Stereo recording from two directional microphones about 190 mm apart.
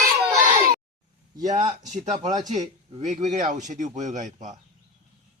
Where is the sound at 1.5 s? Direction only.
40° right (ahead or behind).